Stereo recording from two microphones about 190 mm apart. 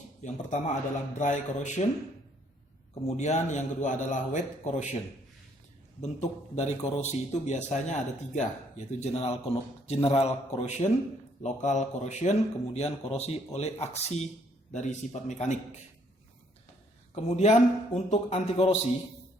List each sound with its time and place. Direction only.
0.2 s a man's voice: 40° left (ahead or behind)
2.9 s a man's voice: 35° left (ahead or behind)
6.0 s a man's voice: 35° left (ahead or behind)
17.2 s a man's voice: 35° left (ahead or behind)